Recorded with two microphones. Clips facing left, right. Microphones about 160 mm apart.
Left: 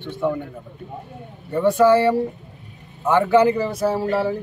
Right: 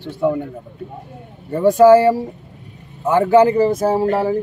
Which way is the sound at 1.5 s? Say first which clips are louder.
Right 5 dB; 45° right (ahead or behind).